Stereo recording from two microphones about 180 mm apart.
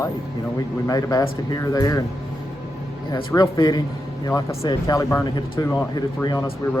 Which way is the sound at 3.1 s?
20° left (ahead or behind).